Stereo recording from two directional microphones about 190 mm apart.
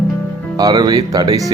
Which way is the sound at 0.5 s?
20° right (ahead or behind).